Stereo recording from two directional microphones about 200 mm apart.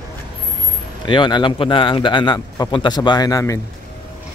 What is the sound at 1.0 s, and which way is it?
A man's voice, 25° left (ahead or behind).